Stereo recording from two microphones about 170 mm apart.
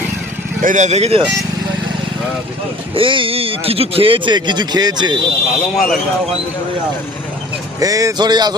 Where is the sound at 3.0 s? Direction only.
30° right (ahead or behind).